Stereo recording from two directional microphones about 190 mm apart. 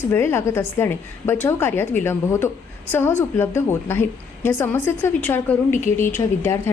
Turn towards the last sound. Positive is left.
turn(degrees=15)  # may be behind; listen again after turning